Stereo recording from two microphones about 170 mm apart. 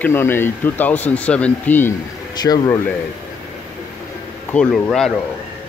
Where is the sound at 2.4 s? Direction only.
25° left (ahead or behind).